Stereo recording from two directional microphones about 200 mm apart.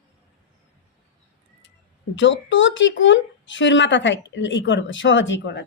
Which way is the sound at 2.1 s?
65° left (ahead or behind).